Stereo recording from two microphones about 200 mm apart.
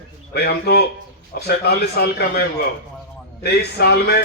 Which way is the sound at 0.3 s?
55° left (ahead or behind).